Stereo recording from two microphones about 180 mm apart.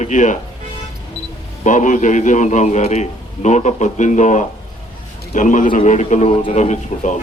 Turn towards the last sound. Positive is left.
turn(degrees=40)  # may be behind; listen again after turning